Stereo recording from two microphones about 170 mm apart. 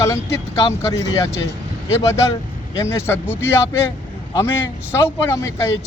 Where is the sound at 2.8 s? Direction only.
15° left (ahead or behind).